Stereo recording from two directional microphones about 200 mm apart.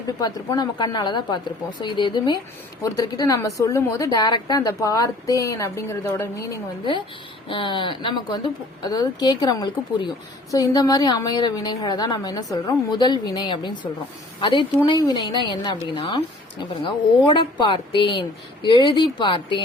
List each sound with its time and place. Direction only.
0.2 s a woman's voice: 20° left (ahead or behind)
7.4 s a woman's voice: 25° left (ahead or behind)